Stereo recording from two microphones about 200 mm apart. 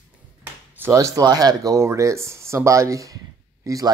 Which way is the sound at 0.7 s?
15° right (ahead or behind).